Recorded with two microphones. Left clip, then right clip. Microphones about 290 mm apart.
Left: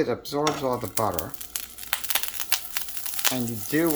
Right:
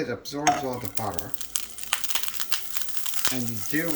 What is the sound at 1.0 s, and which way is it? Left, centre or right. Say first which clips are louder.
Crumpling: left 5 dB; centre.